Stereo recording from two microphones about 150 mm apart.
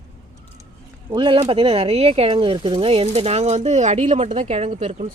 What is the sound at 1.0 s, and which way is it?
Speech, 35° right (ahead or behind).